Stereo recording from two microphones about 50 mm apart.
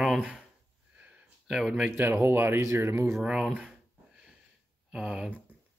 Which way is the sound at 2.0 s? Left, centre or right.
Right.